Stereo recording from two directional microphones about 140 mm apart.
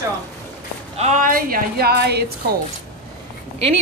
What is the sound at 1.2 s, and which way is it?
Speech, 90° right.